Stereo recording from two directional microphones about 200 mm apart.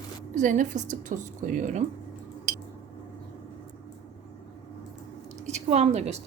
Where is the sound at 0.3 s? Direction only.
40° right (ahead or behind).